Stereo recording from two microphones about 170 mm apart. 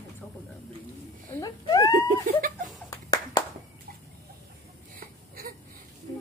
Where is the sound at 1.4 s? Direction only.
20° left (ahead or behind).